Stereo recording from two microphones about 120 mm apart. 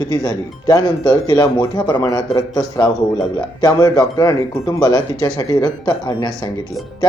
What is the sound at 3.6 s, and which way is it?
Speech, 35° left (ahead or behind).